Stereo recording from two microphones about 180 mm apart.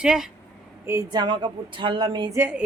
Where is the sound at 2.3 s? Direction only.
10° right (ahead or behind).